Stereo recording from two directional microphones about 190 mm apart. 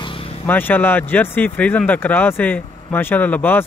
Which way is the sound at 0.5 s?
10° left (ahead or behind).